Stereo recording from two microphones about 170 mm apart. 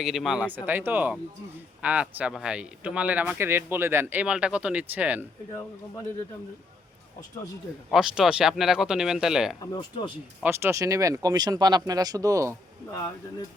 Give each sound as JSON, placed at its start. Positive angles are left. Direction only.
{"t": 0.0, "sound": "speech", "side_deg": 0}
{"t": 7.9, "sound": "speech", "side_deg": 0}
{"t": 9.6, "sound": "speech", "side_deg": 30}
{"t": 10.4, "sound": "speech", "side_deg": -15}